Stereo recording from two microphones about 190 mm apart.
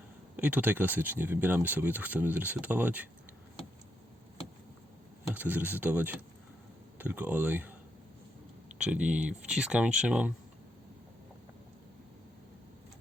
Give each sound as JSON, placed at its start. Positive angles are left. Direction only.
{"t": 0.3, "sound": "speech", "side_deg": -10}
{"t": 5.3, "sound": "speech", "side_deg": -10}
{"t": 8.8, "sound": "speech", "side_deg": -5}